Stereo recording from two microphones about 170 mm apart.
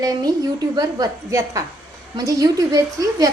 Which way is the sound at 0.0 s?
20° right (ahead or behind).